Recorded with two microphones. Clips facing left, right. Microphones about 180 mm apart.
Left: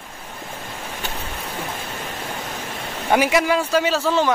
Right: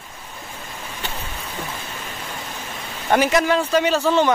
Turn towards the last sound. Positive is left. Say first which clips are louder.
# right 2 dB
turn(degrees=5)  # may be behind; listen again after turning